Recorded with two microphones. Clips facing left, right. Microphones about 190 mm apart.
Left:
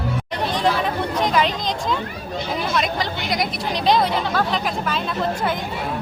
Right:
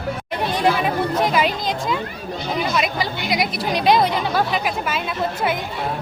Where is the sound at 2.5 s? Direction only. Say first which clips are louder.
Right 1 dB; 5° right (ahead or behind).